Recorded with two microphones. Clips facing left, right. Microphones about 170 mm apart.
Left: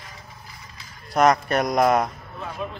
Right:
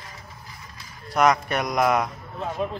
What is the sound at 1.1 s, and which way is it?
Speech, 40° left (ahead or behind).